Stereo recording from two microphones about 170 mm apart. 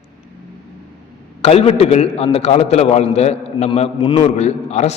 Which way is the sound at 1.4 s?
35° left (ahead or behind).